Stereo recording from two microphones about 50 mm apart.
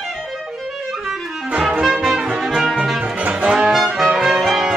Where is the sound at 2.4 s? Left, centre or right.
Centre.